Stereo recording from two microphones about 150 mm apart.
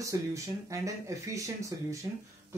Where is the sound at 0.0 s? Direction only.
20° right (ahead or behind).